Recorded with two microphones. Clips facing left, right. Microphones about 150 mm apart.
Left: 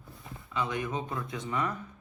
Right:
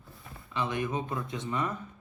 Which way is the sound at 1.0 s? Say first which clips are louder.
Right 1 dB; 25° right (ahead or behind).